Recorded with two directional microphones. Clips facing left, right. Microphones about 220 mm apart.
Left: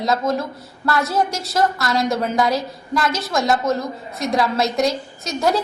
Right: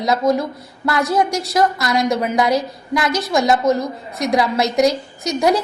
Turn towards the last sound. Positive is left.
turn(degrees=-15)  # may be behind; listen again after turning